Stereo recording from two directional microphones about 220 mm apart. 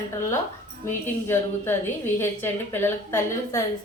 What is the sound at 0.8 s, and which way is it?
A woman's voice, 10° left (ahead or behind).